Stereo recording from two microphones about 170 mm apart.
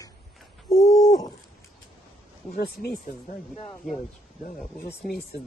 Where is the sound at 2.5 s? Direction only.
65° left (ahead or behind).